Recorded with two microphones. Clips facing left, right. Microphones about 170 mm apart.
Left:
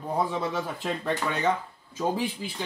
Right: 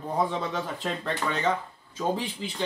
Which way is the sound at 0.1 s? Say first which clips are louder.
Even; 10° left (ahead or behind).